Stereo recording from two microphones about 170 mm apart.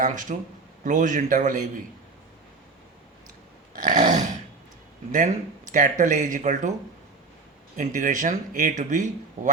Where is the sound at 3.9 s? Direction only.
45° right (ahead or behind).